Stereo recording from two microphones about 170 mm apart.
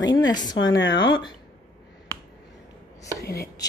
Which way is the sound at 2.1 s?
15° left (ahead or behind).